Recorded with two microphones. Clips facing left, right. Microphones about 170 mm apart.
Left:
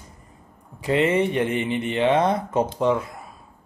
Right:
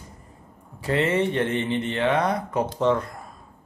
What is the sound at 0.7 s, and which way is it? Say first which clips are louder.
Speech: left 2 dB; 15° left (ahead or behind).